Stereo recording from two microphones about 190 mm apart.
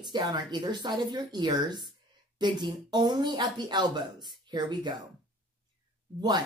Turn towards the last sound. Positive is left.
turn(degrees=-20)  # may be behind; listen again after turning